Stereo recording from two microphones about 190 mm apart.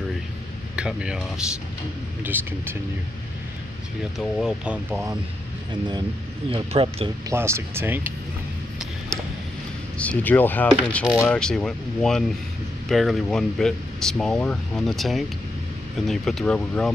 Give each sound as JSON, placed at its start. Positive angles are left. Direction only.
{"t": 0.7, "sound": "speech", "side_deg": -5}
{"t": 2.2, "sound": "speech", "side_deg": -10}
{"t": 4.2, "sound": "speech", "side_deg": 0}
{"t": 6.5, "sound": "speech", "side_deg": -30}
{"t": 7.2, "sound": "speech", "side_deg": -15}
{"t": 9.9, "sound": "speech", "side_deg": 10}